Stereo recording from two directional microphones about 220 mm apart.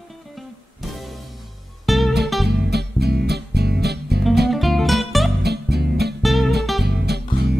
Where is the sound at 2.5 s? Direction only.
45° right (ahead or behind).